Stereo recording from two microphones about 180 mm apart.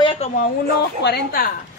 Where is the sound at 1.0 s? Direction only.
60° left (ahead or behind).